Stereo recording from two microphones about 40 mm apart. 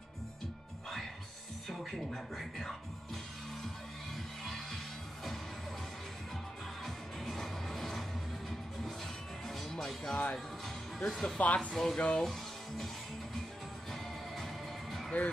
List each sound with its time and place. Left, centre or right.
1.7 s speech: centre
4.5 s music: centre
6.8 s music: centre
10.3 s speech: centre
11.3 s speech: left
11.7 s speech: centre
12.2 s music: centre